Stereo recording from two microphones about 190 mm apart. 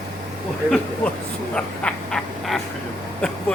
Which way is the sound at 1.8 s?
Centre (ahead or behind).